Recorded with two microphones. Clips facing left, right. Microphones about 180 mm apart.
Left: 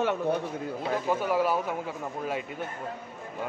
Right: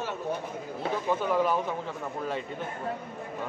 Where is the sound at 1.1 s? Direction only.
10° left (ahead or behind).